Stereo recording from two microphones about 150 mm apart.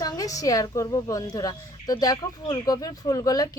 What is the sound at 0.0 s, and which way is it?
A woman's voice, 25° left (ahead or behind).